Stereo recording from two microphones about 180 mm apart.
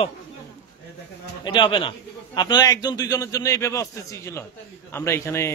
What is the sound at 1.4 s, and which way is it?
A man's voice, 25° left (ahead or behind).